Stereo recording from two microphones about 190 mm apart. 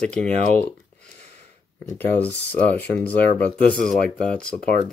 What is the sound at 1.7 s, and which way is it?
Speech, 10° left (ahead or behind).